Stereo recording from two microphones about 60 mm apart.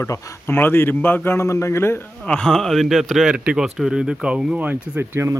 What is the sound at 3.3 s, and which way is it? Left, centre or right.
Speech, centre.